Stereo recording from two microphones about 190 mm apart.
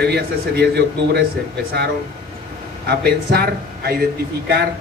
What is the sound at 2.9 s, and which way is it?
A man's voice, 55° right (ahead or behind).